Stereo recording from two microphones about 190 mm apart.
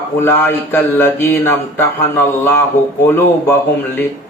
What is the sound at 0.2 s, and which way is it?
Speech, 10° left (ahead or behind).